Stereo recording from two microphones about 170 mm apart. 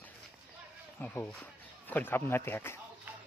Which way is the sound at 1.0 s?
10° left (ahead or behind).